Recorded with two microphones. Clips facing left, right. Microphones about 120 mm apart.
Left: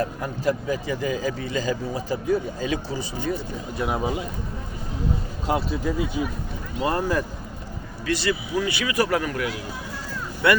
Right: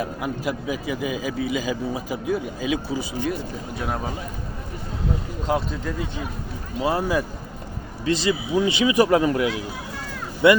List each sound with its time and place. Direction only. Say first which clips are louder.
0.0 s speech: left 2 dB; 10° right (ahead or behind)
3.8 s a man's voice: left 4 dB; 5° left (ahead or behind)
5.5 s speech: left 1 dB; 5° left (ahead or behind)
6.8 s speech: right 1 dB; 5° right (ahead or behind)
8.0 s speech: right 3 dB; 20° right (ahead or behind)